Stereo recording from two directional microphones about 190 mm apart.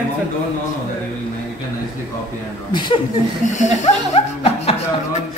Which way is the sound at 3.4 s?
40° left (ahead or behind).